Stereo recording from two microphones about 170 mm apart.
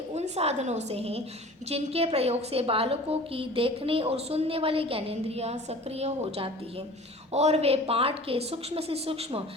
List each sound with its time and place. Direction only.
0.1 s a woman's voice: 40° right (ahead or behind)